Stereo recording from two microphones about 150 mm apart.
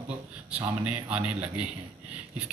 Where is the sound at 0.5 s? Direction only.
10° right (ahead or behind).